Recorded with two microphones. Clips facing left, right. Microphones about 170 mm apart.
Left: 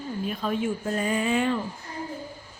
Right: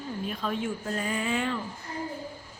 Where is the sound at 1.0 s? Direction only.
20° left (ahead or behind).